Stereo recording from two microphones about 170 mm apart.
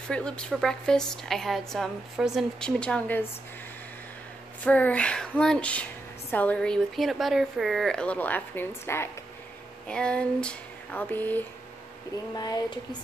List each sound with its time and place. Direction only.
0.1 s a woman's voice: 5° left (ahead or behind)
4.6 s a woman's voice: 10° left (ahead or behind)
12.4 s speech: 25° left (ahead or behind)